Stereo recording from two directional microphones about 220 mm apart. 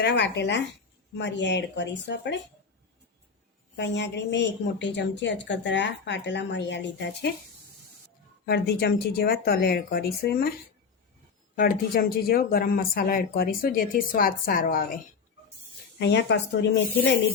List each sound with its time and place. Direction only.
0.0 s a woman's voice: 50° left (ahead or behind)
3.8 s a woman's voice: 50° left (ahead or behind)
8.4 s a woman's voice: 45° left (ahead or behind)
11.5 s speech: 40° left (ahead or behind)
16.0 s a woman's voice: 50° left (ahead or behind)